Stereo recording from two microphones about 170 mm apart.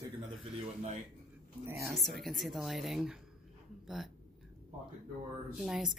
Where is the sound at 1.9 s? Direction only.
Centre (ahead or behind).